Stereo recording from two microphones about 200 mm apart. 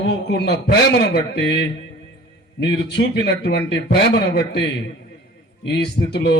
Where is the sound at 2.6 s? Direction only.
55° left (ahead or behind).